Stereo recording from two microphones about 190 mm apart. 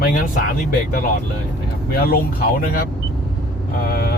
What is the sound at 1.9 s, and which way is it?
Speech, 50° left (ahead or behind).